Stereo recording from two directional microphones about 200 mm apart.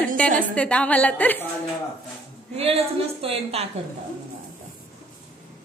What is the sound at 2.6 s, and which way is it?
A woman's voice, 30° right (ahead or behind).